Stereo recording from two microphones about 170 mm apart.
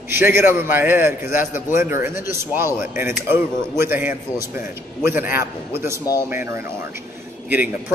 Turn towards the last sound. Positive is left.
turn(degrees=-10)  # may be behind; listen again after turning